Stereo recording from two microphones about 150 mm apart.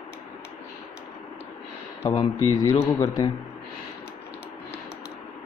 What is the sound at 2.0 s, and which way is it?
Speech, 25° left (ahead or behind).